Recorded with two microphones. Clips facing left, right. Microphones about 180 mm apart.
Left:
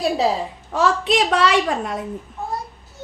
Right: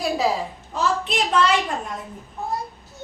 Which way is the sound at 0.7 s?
80° left.